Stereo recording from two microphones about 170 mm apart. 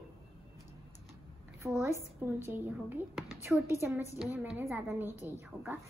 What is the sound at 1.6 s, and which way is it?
Speech, centre (ahead or behind).